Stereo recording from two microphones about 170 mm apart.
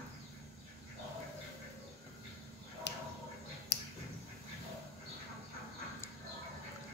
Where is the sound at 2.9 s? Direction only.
90° left.